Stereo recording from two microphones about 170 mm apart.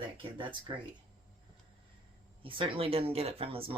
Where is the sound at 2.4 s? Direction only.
30° right (ahead or behind).